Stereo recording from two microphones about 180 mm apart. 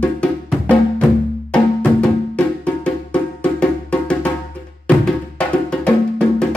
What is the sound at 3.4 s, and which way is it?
Music, 5° left (ahead or behind).